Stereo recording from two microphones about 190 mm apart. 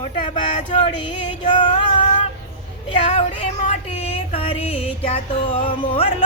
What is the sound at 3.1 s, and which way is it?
Music, 35° left (ahead or behind).